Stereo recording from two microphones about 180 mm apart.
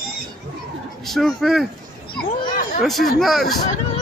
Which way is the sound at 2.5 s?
50° left (ahead or behind).